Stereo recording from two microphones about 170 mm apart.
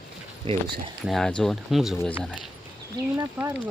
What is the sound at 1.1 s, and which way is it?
Speech, centre (ahead or behind).